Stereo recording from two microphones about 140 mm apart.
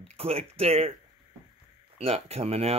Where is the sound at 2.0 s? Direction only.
45° right (ahead or behind).